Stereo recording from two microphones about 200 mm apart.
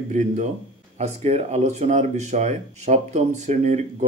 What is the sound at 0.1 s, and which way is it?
Speech, 40° right (ahead or behind).